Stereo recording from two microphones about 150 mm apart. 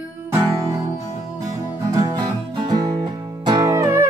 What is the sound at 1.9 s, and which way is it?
Music, 25° right (ahead or behind).